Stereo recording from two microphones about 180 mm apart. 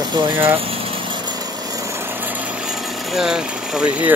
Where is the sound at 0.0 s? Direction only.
25° right (ahead or behind).